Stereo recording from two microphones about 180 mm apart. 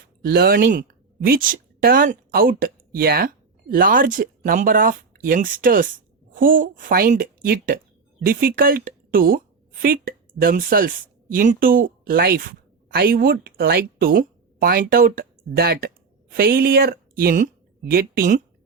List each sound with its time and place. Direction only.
0.2 s a woman's voice: 55° right (ahead or behind)